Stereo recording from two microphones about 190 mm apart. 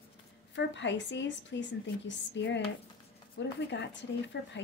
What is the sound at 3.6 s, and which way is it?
Speech, 70° left (ahead or behind).